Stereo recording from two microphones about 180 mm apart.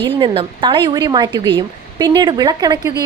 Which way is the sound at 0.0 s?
25° right (ahead or behind).